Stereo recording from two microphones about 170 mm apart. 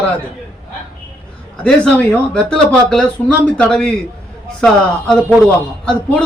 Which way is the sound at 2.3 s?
5° left (ahead or behind).